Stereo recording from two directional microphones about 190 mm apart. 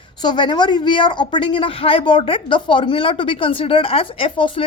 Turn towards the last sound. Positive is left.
turn(degrees=25)  # may be behind; listen again after turning